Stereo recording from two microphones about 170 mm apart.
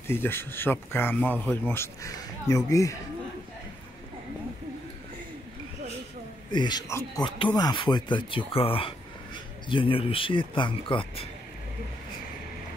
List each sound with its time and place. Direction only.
0.0 s speech: 15° left (ahead or behind)
6.5 s speech: 25° left (ahead or behind)
6.9 s speech: 15° left (ahead or behind)
7.2 s speech: 30° left (ahead or behind)